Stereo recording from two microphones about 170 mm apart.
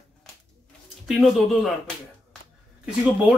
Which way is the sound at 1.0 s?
Centre (ahead or behind).